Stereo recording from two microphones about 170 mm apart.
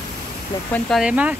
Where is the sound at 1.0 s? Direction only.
10° right (ahead or behind).